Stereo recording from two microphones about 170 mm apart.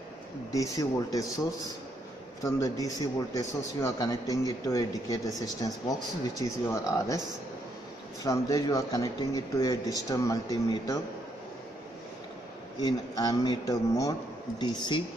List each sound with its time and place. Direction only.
0.6 s a man's voice: 20° left (ahead or behind)
2.4 s a man's voice: 20° left (ahead or behind)
8.2 s a man's voice: 20° left (ahead or behind)
12.8 s a man's voice: 20° left (ahead or behind)